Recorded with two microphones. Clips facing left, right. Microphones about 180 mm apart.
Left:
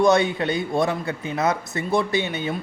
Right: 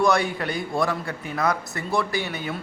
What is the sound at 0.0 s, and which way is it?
Speech, 20° left (ahead or behind).